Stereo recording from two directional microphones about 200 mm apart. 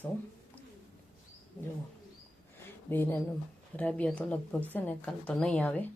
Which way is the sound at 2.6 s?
10° left (ahead or behind).